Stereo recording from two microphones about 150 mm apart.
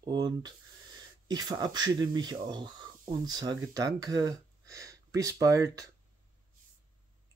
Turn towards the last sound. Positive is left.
turn(degrees=-20)  # may be behind; listen again after turning